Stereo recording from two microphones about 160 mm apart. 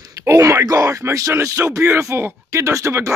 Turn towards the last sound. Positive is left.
turn(degrees=-20)  # may be behind; listen again after turning